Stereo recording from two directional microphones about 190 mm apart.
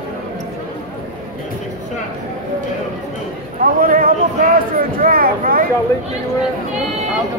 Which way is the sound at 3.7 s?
50° right (ahead or behind).